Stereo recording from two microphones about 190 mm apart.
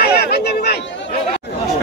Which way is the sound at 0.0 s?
55° left (ahead or behind).